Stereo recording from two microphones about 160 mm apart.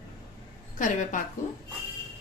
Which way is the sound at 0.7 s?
55° left (ahead or behind).